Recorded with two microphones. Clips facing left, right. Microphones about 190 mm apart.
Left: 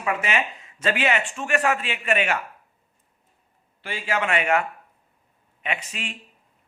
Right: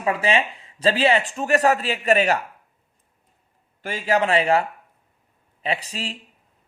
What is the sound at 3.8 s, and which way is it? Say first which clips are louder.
Speech: right 5 dB; 40° right (ahead or behind).